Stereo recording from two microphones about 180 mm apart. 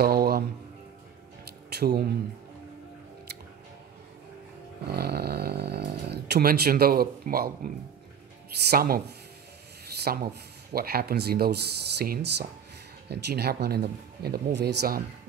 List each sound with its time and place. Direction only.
0.0 s a sound: 60° right (ahead or behind)
1.8 s speech: 60° right (ahead or behind)
4.8 s snoring: 60° right (ahead or behind)
8.6 s speech: 55° right (ahead or behind)